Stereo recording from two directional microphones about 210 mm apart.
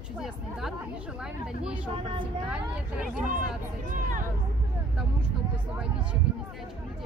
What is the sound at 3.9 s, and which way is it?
Speech, 40° right (ahead or behind).